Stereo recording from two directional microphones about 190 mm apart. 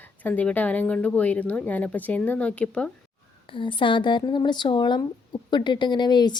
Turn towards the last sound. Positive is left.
turn(degrees=20)  # may be behind; listen again after turning